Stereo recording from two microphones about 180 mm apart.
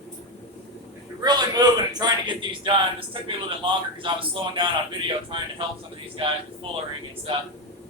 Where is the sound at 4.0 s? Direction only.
30° right (ahead or behind).